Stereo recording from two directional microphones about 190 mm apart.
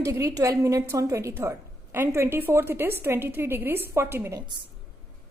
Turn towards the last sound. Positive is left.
turn(degrees=-15)  # may be behind; listen again after turning